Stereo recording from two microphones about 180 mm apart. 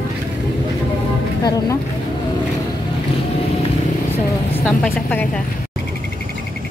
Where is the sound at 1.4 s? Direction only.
20° left (ahead or behind).